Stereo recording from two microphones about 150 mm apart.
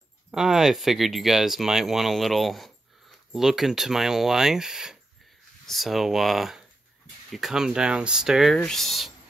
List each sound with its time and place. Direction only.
0.3 s speech: centre (ahead or behind)